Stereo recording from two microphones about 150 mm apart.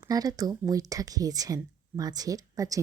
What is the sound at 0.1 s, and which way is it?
Speech, 25° right (ahead or behind).